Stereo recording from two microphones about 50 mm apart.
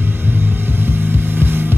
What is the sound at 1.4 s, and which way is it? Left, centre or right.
Hum, right.